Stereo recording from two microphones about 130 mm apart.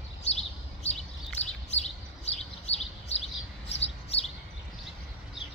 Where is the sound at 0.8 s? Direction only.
55° left (ahead or behind).